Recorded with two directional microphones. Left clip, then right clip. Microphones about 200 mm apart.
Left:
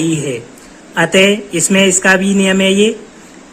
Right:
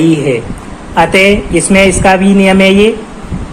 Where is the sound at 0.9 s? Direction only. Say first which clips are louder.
Right 4 dB; 30° left (ahead or behind).